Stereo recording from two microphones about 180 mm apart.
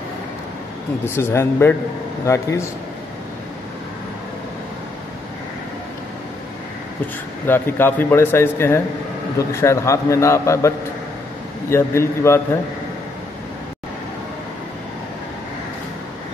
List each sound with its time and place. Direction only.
1.0 s a man's voice: 15° left (ahead or behind)
7.4 s a man's voice: 10° left (ahead or behind)
11.7 s a man's voice: 15° left (ahead or behind)